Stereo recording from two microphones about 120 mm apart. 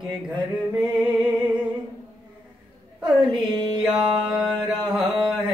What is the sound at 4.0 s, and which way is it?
Mantra, 5° right (ahead or behind).